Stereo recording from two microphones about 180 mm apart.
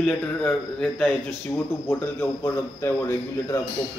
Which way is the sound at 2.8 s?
15° left (ahead or behind).